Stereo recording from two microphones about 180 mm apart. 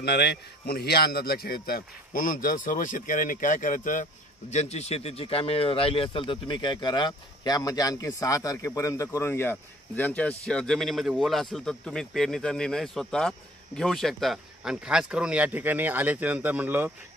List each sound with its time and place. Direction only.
0.0 s a man's voice: 65° left (ahead or behind); by 16.9 s 10° right (ahead or behind)